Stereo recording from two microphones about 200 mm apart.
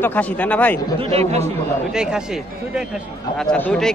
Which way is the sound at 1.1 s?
30° right (ahead or behind).